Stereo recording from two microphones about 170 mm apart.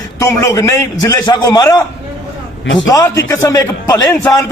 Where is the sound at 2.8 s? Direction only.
20° left (ahead or behind).